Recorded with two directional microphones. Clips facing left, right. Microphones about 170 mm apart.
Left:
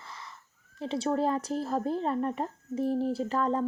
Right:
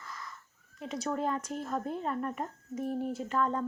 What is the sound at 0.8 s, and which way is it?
Speech, 30° left (ahead or behind).